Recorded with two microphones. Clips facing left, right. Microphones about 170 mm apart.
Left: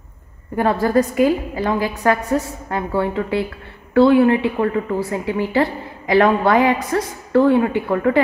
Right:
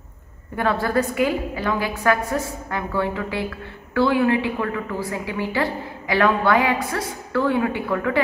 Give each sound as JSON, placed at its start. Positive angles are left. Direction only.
{"t": 0.6, "sound": "a woman's voice", "side_deg": 40}